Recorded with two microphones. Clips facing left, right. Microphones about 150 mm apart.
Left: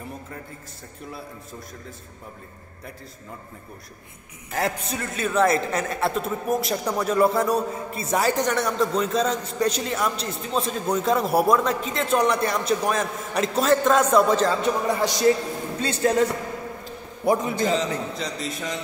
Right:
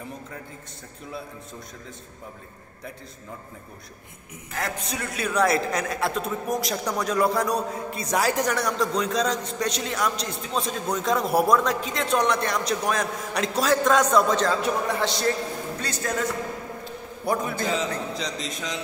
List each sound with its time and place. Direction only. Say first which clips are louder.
4.8 s a man's voice: left 2 dB; centre (ahead or behind)
15.0 s a man's voice: left 6 dB; 15° left (ahead or behind)
15.8 s a man's voice: left 9 dB; 30° left (ahead or behind)
17.7 s a man's voice: left 2 dB; 5° left (ahead or behind)